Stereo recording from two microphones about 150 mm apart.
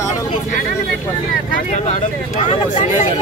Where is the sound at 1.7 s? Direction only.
50° left (ahead or behind).